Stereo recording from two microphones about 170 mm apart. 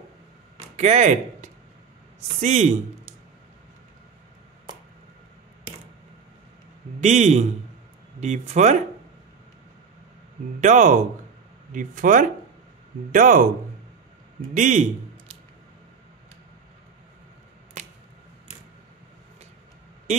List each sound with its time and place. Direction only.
0.7 s speech: 40° right (ahead or behind)
7.0 s speech: 40° right (ahead or behind)
10.6 s speech: 45° right (ahead or behind)
14.5 s speech: 45° right (ahead or behind)